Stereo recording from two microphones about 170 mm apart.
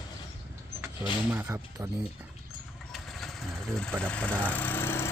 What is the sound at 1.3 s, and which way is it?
Speech, 10° right (ahead or behind).